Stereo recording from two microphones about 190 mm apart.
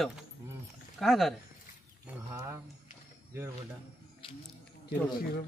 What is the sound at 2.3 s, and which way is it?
Speech, 15° right (ahead or behind).